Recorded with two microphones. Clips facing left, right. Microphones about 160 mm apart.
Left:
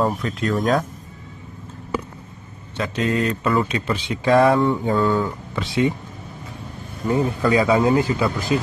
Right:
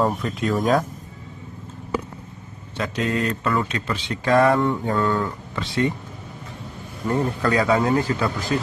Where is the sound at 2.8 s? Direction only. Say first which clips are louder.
Left 2 dB; centre (ahead or behind).